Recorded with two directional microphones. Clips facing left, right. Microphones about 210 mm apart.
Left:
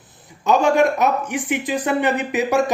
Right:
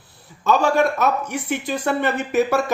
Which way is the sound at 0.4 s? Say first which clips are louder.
Left 2 dB; 15° left (ahead or behind).